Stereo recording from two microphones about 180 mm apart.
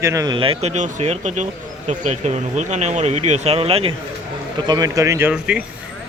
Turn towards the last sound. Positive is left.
turn(degrees=-5)  # may be behind; listen again after turning